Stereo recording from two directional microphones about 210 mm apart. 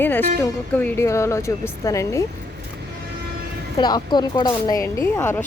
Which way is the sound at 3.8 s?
20° left (ahead or behind).